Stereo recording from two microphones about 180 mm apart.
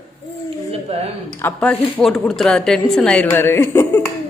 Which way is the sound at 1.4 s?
10° left (ahead or behind).